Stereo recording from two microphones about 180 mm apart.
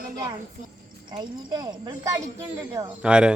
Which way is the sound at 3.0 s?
5° right (ahead or behind).